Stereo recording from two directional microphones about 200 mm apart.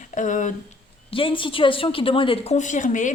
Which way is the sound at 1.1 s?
25° left (ahead or behind).